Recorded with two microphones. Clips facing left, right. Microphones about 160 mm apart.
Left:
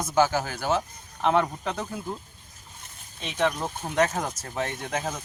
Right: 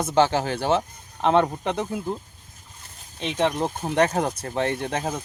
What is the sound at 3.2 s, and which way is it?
Speech, 20° right (ahead or behind).